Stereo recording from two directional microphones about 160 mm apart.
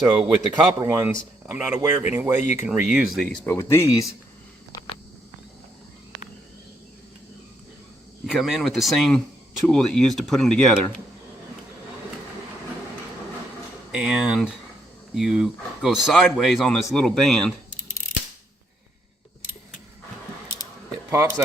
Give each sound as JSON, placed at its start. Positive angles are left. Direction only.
{"t": 0.1, "sound": "speech", "side_deg": -30}
{"t": 0.8, "sound": "speech", "side_deg": -15}
{"t": 3.4, "sound": "speech", "side_deg": 15}
{"t": 8.3, "sound": "speech", "side_deg": 0}
{"t": 13.9, "sound": "speech", "side_deg": -5}
{"t": 21.1, "sound": "speech", "side_deg": -20}